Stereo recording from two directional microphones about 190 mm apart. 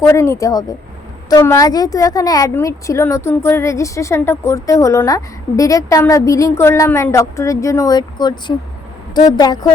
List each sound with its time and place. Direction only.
0.0 s a woman's voice: 15° left (ahead or behind)